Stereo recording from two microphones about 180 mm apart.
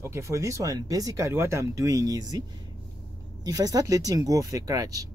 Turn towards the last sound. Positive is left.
turn(degrees=-20)  # may be behind; listen again after turning